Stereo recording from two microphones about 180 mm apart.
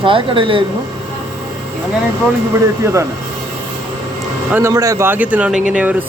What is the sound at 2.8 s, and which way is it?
Speech, 15° right (ahead or behind).